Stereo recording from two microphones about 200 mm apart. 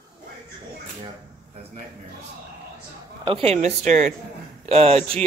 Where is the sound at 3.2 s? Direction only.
25° right (ahead or behind).